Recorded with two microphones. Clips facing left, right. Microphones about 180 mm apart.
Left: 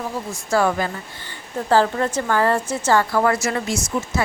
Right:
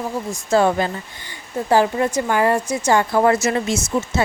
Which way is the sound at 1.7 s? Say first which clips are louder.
Right 1 dB; 15° right (ahead or behind).